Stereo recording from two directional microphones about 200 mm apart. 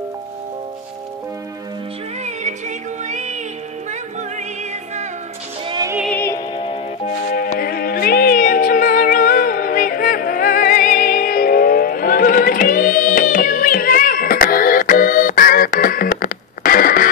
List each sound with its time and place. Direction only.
3.1 s music: 35° right (ahead or behind)
5.7 s music: 20° right (ahead or behind)
6.0 s music: 10° left (ahead or behind)
6.5 s music: 25° left (ahead or behind)
7.3 s music: 50° left (ahead or behind)